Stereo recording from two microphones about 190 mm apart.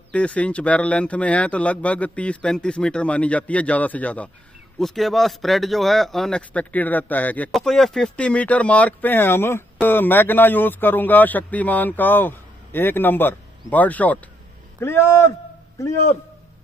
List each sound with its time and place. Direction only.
0.1 s speech: 5° left (ahead or behind)